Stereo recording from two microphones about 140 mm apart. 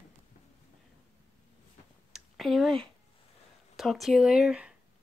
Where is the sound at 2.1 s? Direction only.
Centre (ahead or behind).